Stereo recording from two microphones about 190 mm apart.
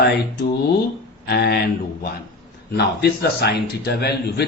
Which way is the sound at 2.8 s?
60° left (ahead or behind).